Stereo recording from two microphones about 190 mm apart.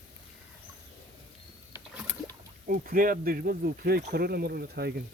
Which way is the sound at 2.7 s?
50° right (ahead or behind).